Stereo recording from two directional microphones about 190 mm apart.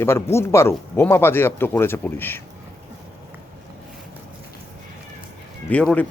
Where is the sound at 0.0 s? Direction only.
15° left (ahead or behind).